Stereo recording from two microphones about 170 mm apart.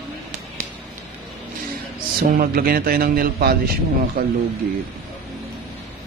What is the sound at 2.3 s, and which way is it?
A man's voice, 60° right (ahead or behind).